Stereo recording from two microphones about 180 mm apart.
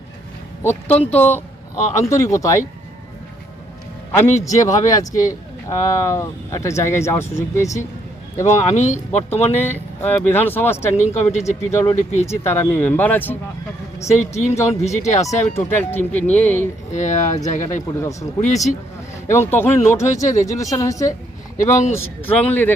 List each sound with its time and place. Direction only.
0.6 s speech: 10° left (ahead or behind)
4.4 s speech: 20° left (ahead or behind)
8.4 s speech: 40° left (ahead or behind)
9.6 s speech: 10° left (ahead or behind)
11.0 s speech: 40° left (ahead or behind)
11.7 s speech: 15° left (ahead or behind)
14.1 s speech: 40° left (ahead or behind)
15.5 s speech: 10° left (ahead or behind)
16.9 s speech: 45° left (ahead or behind)
18.0 s speech: 15° left (ahead or behind)
18.3 s speech: 40° left (ahead or behind)
19.3 s speech: 15° left (ahead or behind)